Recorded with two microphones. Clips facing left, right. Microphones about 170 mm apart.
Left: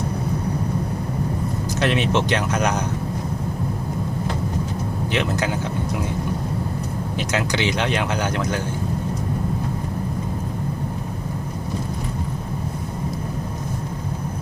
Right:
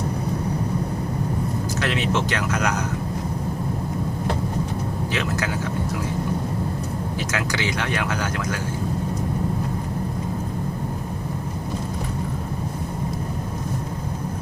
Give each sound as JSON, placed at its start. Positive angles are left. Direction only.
{"t": 1.8, "sound": "speech", "side_deg": 20}
{"t": 7.2, "sound": "speech", "side_deg": 20}